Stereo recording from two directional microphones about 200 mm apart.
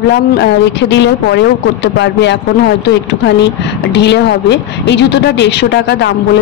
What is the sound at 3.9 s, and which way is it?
A woman's voice, 60° left (ahead or behind).